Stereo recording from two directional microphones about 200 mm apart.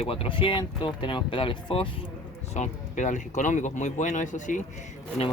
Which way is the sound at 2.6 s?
40° left (ahead or behind).